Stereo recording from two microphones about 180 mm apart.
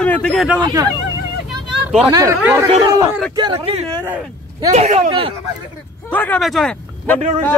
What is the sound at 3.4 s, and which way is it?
Speech, 25° right (ahead or behind).